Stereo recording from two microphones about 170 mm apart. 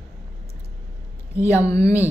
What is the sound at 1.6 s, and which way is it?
Speech, 20° left (ahead or behind).